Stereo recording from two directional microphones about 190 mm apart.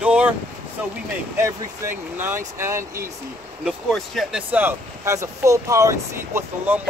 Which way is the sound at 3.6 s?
Centre (ahead or behind).